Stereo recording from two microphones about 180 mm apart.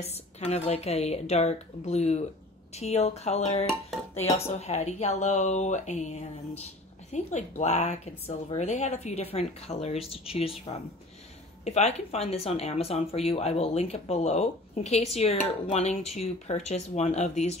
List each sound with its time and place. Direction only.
0.0 s speech: 35° left (ahead or behind)
11.6 s speech: 40° left (ahead or behind)